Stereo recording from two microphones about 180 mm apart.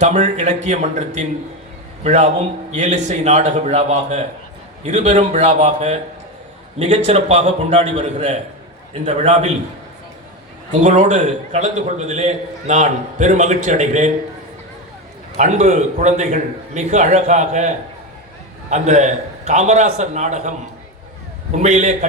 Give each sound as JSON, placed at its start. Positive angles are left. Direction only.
{"t": 0.0, "sound": "a man's voice", "side_deg": -40}
{"t": 10.7, "sound": "a man's voice", "side_deg": -40}
{"t": 15.4, "sound": "a man's voice", "side_deg": -40}
{"t": 21.6, "sound": "a man's voice", "side_deg": -40}